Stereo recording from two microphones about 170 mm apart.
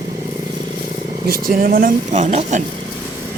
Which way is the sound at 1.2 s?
60° right (ahead or behind).